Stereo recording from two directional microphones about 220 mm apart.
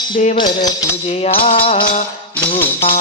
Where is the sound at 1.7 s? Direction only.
35° left (ahead or behind).